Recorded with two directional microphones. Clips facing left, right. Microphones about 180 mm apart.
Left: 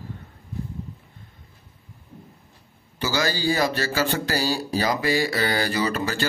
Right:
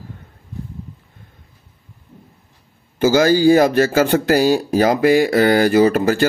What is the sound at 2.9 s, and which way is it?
Speech, 50° right (ahead or behind).